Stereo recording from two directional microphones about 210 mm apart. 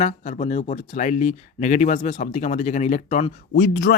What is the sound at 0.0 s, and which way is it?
Speech, 35° left (ahead or behind).